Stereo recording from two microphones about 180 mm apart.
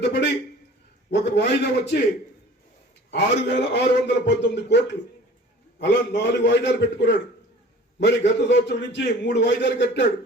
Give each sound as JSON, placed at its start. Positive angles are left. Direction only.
{"t": 1.1, "sound": "a man's voice", "side_deg": 75}
{"t": 3.1, "sound": "a man's voice", "side_deg": 75}